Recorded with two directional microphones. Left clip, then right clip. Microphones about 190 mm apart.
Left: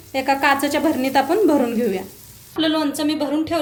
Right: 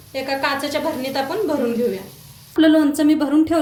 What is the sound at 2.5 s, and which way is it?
Speech, 45° right (ahead or behind).